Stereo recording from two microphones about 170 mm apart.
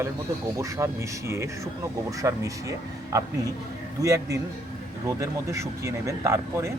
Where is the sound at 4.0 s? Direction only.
20° right (ahead or behind).